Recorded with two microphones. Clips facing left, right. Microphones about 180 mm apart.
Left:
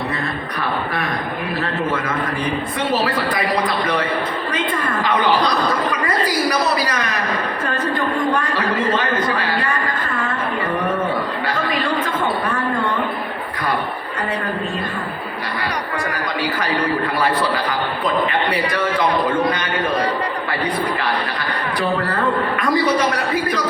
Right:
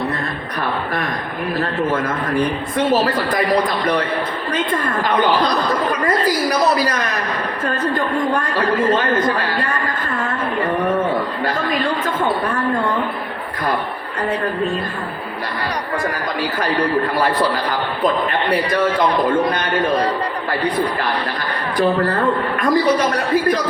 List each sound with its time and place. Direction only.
11.4 s chatter: 45° right (ahead or behind)
22.7 s a man's voice: 40° right (ahead or behind)